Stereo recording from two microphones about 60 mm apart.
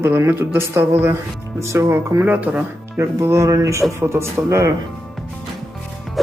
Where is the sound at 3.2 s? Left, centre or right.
Right.